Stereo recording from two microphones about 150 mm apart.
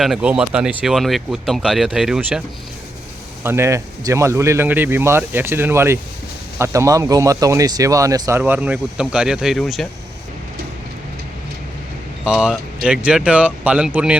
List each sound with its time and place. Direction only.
0.0 s speech: 5° right (ahead or behind)
3.4 s speech: 15° right (ahead or behind); by 9.8 s centre (ahead or behind)
12.2 s speech: 5° right (ahead or behind)